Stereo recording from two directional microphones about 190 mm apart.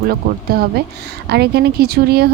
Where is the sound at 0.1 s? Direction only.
55° right (ahead or behind).